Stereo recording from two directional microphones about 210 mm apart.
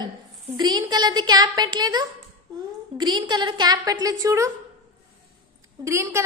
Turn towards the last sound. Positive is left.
turn(degrees=-15)  # may be behind; listen again after turning